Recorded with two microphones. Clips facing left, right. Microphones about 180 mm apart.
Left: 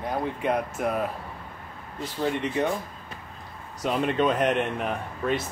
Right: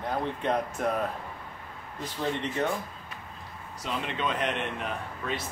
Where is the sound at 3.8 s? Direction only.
50° left (ahead or behind).